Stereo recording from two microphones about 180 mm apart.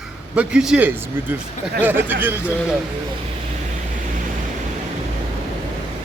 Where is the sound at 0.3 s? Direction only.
5° right (ahead or behind).